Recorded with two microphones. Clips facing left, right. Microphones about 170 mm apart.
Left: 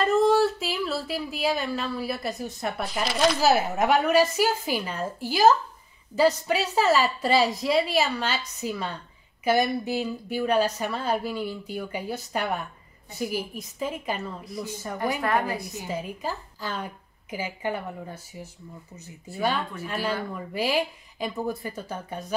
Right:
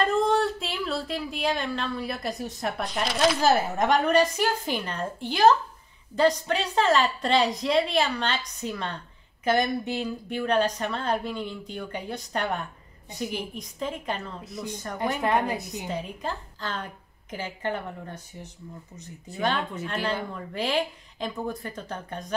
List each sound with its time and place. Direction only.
0.0 s a woman's voice: centre (ahead or behind)
14.4 s a woman's voice: 20° right (ahead or behind)
14.7 s a woman's voice: 5° left (ahead or behind)
15.2 s a woman's voice: 20° right (ahead or behind)
15.9 s a woman's voice: 5° left (ahead or behind)